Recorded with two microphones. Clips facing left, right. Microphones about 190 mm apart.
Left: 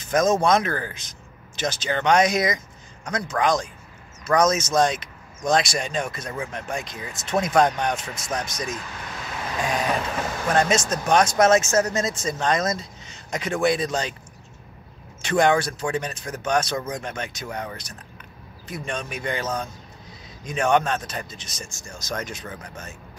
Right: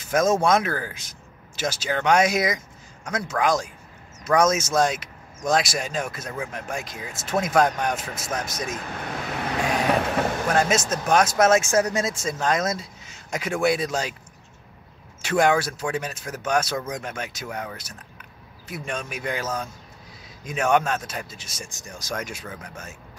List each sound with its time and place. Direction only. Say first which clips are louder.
0.0 s speech: left 1 dB; 5° right (ahead or behind)
8.6 s vehicle: right 2 dB; 55° right (ahead or behind)
10.5 s speech: left 3 dB; 5° right (ahead or behind)
15.2 s speech: left 1 dB; 5° right (ahead or behind)